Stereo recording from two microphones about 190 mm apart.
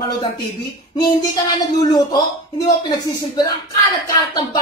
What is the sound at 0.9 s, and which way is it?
Speech, 20° left (ahead or behind).